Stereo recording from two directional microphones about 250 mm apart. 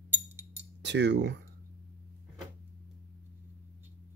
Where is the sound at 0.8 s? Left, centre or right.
Right.